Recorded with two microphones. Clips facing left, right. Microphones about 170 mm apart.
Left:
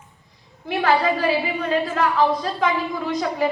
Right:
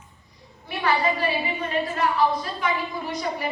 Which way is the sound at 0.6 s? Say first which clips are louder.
Left 4 dB; 70° left (ahead or behind).